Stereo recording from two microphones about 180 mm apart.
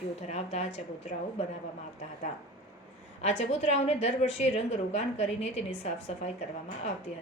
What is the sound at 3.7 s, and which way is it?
A woman's voice, 35° left (ahead or behind).